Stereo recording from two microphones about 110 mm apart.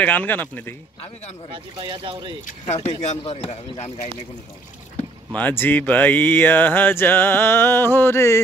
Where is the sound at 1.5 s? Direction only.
45° right (ahead or behind).